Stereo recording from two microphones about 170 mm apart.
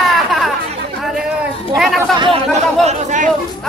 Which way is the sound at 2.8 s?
40° right (ahead or behind).